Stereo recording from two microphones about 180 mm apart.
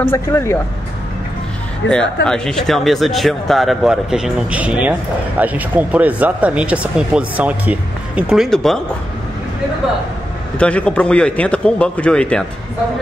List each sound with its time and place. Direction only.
0.0 s a man's voice: 15° left (ahead or behind)
1.8 s speech: 90° left
2.2 s speech: 5° left (ahead or behind)
10.6 s a man's voice: 5° left (ahead or behind)